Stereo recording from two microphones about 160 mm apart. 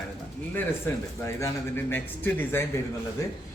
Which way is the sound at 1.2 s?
15° left (ahead or behind).